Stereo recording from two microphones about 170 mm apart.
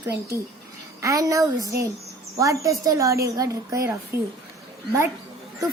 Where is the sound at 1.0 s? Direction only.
20° right (ahead or behind).